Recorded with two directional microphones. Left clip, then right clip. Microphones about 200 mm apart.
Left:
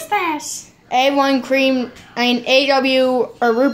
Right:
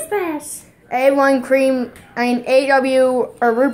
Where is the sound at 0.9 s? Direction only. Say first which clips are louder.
Even; 10° left (ahead or behind).